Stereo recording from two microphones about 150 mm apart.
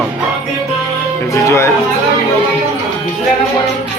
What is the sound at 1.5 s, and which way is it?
Speech, 20° left (ahead or behind).